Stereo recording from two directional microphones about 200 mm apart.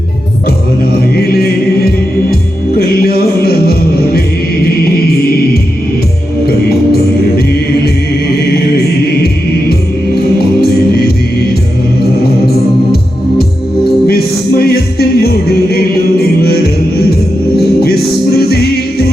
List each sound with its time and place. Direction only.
1.1 s music: 50° left (ahead or behind)
10.3 s music: 50° left (ahead or behind)
14.1 s music: 50° left (ahead or behind)
17.8 s music: 50° left (ahead or behind)